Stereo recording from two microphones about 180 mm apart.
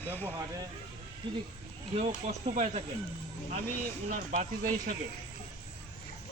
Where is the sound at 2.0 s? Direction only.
40° right (ahead or behind).